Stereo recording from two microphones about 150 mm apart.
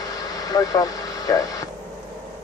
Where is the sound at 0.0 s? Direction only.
25° left (ahead or behind).